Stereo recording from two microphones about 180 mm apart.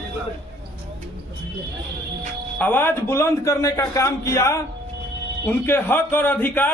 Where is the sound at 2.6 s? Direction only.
10° left (ahead or behind).